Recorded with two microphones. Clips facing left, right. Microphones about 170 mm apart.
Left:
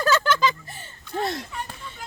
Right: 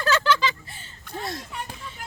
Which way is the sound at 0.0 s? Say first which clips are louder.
Left 1 dB; 45° left (ahead or behind).